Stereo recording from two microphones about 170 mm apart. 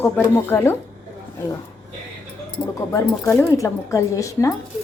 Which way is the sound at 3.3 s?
15° left (ahead or behind).